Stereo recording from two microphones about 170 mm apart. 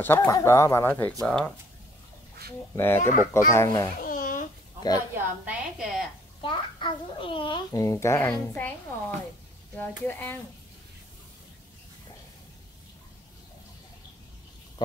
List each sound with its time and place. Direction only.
0.0 s speech: 10° left (ahead or behind)
2.7 s speech: 15° left (ahead or behind)
3.0 s speech: 50° left (ahead or behind)
3.5 s speech: 20° left (ahead or behind)
4.0 s babbling: 55° left (ahead or behind)
5.1 s a woman's voice: 10° right (ahead or behind)
6.4 s a child's voice: 30° left (ahead or behind); by 8.7 s 10° left (ahead or behind)
9.8 s speech: 10° left (ahead or behind)